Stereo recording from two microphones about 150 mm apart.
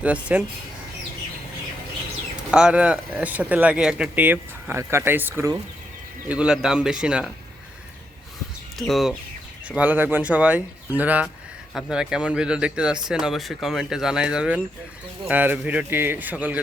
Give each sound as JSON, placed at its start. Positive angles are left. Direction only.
{"t": 0.0, "sound": "speech", "side_deg": -10}
{"t": 2.5, "sound": "speech", "side_deg": -5}
{"t": 8.9, "sound": "speech", "side_deg": 0}